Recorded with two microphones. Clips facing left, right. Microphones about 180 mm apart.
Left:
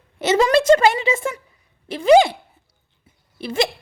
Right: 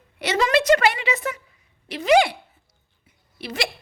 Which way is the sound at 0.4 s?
30° left (ahead or behind).